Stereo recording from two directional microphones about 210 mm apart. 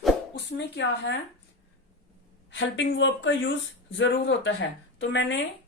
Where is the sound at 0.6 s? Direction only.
55° left (ahead or behind).